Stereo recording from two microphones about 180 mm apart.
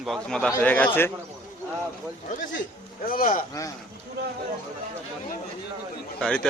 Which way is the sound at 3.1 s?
50° left (ahead or behind).